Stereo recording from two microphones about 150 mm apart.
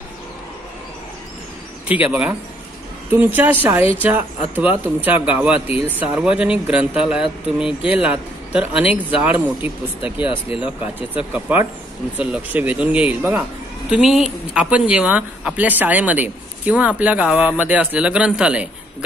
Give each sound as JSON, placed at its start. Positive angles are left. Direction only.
{"t": 1.9, "sound": "a man's voice", "side_deg": -10}